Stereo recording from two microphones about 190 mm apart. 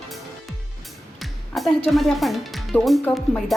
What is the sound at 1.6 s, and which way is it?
Music, centre (ahead or behind).